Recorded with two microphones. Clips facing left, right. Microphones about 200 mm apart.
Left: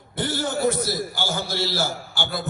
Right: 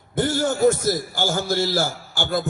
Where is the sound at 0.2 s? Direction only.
45° right (ahead or behind).